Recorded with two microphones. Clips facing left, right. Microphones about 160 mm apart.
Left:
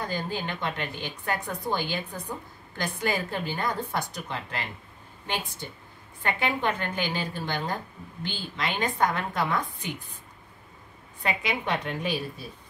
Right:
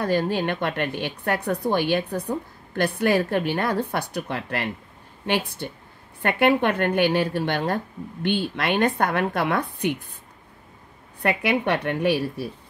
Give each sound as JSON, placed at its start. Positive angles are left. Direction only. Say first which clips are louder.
{"t": 0.0, "sound": "a woman's voice", "louder": "right 9 dB", "side_deg": -65}
{"t": 11.2, "sound": "a woman's voice", "louder": "right 7 dB", "side_deg": -65}